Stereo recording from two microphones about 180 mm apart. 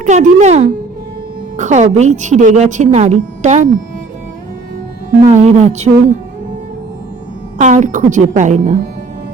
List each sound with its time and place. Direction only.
0.0 s a woman's voice: 40° right (ahead or behind)
5.2 s a woman's voice: 40° right (ahead or behind)
7.6 s a woman's voice: 45° right (ahead or behind)